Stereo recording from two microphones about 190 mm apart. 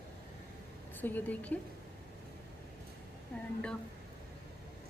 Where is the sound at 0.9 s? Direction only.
10° left (ahead or behind).